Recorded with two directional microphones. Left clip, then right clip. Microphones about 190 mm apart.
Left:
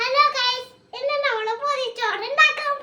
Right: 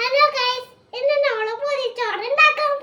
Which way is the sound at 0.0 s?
10° left (ahead or behind).